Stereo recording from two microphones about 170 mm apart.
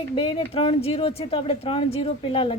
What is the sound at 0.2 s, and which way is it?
Speech, 35° left (ahead or behind).